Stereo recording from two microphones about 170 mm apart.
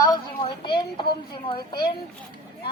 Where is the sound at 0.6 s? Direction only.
30° left (ahead or behind).